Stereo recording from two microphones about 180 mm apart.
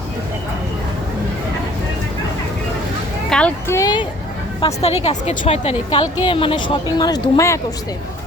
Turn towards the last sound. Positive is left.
turn(degrees=15)  # may be behind; listen again after turning